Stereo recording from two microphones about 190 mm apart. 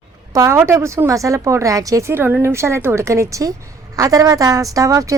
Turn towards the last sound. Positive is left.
turn(degrees=-15)  # may be behind; listen again after turning